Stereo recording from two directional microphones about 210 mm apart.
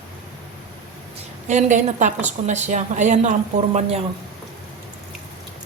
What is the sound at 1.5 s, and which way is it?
A woman's voice, 35° right (ahead or behind).